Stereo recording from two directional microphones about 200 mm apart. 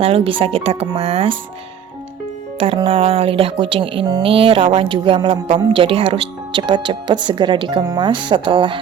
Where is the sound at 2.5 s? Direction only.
25° right (ahead or behind).